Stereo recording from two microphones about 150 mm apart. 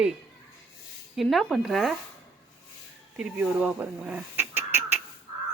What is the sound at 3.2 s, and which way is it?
Speech, 5° right (ahead or behind).